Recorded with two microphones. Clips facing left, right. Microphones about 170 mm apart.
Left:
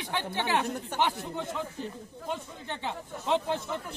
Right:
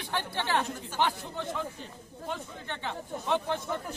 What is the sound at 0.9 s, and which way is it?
Speech, 65° left (ahead or behind).